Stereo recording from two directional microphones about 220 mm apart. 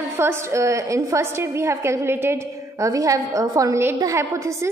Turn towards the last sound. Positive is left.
turn(degrees=-10)  # may be behind; listen again after turning